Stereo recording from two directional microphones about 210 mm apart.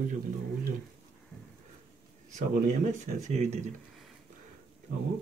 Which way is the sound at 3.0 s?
35° right (ahead or behind).